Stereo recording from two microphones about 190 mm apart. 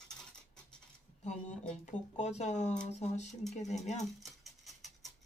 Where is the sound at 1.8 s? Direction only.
35° left (ahead or behind).